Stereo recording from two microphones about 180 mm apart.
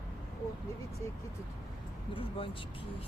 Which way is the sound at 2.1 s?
30° left (ahead or behind).